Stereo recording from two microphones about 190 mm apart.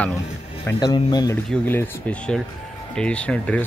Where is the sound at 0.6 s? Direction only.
20° left (ahead or behind).